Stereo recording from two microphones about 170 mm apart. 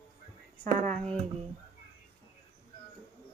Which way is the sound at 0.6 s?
50° right (ahead or behind).